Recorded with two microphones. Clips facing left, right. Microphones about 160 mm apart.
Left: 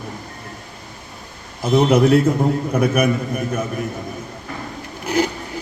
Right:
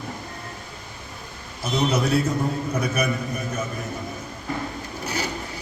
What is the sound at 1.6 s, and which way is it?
A man's voice, 55° left (ahead or behind).